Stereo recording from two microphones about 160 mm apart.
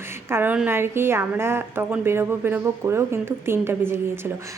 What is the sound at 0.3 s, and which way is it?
A woman's voice, 15° right (ahead or behind).